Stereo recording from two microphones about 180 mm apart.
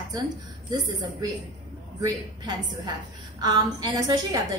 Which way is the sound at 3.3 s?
20° right (ahead or behind).